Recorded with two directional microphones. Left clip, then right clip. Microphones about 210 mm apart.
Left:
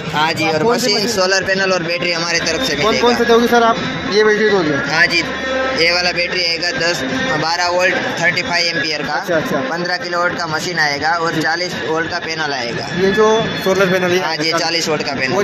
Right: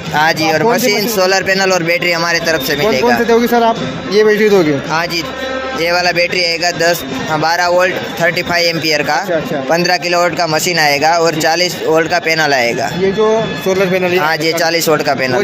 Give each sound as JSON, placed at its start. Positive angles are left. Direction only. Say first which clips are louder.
{"t": 0.2, "sound": "a man's voice", "louder": "right 4 dB", "side_deg": -35}
{"t": 13.7, "sound": "a man's voice", "louder": "right 1 dB", "side_deg": -20}
{"t": 14.2, "sound": "speech", "louder": "right 4 dB", "side_deg": -45}